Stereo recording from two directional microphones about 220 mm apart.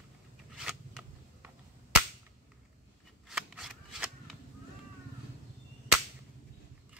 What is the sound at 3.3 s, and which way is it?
Shuffling cards, 5° right (ahead or behind).